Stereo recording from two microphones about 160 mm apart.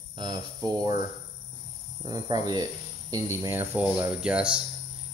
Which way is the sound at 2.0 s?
25° right (ahead or behind).